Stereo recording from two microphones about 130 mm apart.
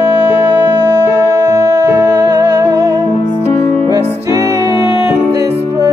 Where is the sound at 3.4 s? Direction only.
20° left (ahead or behind).